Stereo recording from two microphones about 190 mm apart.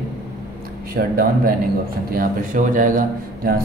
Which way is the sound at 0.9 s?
50° right (ahead or behind).